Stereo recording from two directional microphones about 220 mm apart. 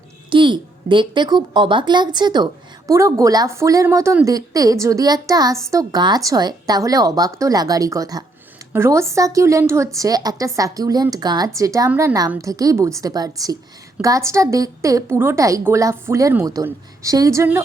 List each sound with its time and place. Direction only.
0.3 s a woman's voice: 20° right (ahead or behind)